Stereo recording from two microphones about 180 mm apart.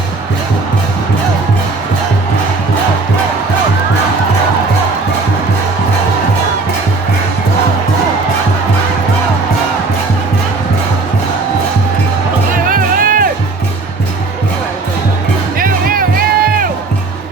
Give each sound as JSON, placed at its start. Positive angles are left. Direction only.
{"t": 12.7, "sound": "music", "side_deg": -50}
{"t": 15.5, "sound": "music", "side_deg": -50}